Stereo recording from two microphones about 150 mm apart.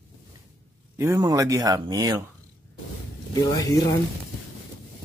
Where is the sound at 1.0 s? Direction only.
25° right (ahead or behind).